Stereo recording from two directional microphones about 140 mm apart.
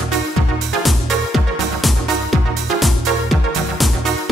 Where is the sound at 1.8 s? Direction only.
Centre (ahead or behind).